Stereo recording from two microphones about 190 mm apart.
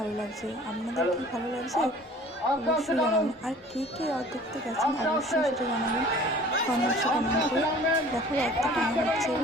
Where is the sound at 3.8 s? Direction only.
30° left (ahead or behind).